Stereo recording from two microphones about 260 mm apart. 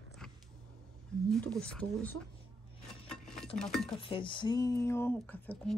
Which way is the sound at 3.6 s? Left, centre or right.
Centre.